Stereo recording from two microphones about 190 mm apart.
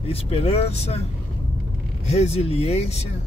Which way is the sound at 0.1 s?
30° left (ahead or behind).